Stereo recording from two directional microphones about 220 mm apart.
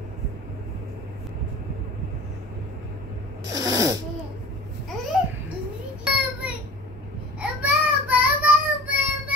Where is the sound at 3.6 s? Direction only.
15° right (ahead or behind).